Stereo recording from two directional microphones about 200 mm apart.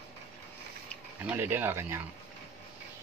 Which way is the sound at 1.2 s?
10° right (ahead or behind).